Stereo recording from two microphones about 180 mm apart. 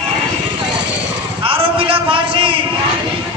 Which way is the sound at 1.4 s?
30° right (ahead or behind).